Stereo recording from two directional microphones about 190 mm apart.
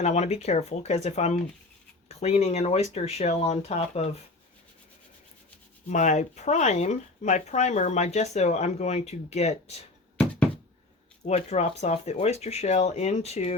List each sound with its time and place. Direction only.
0.0 s speech: 35° left (ahead or behind)
5.9 s speech: 40° left (ahead or behind)
11.2 s speech: 35° left (ahead or behind)